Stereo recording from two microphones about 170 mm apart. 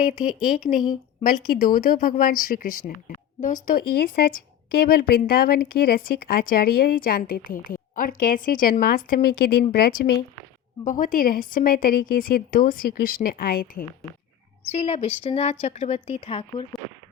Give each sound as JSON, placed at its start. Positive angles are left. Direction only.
{"t": 0.3, "sound": "speech", "side_deg": -5}
{"t": 1.2, "sound": "speech", "side_deg": 60}
{"t": 10.8, "sound": "speech", "side_deg": 50}
{"t": 14.7, "sound": "a woman's voice", "side_deg": 35}